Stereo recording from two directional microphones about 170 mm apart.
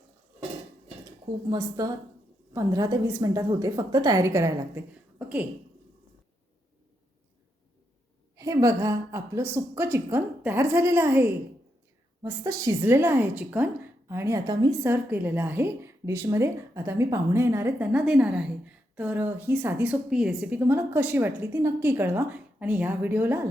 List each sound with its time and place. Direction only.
1.5 s a woman's voice: 20° right (ahead or behind)
8.4 s a woman's voice: 20° right (ahead or behind)
14.8 s a woman's voice: 10° right (ahead or behind)